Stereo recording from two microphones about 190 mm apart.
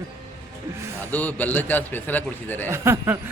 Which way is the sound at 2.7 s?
15° right (ahead or behind).